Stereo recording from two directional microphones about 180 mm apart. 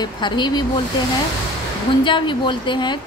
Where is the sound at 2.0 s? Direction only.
25° left (ahead or behind).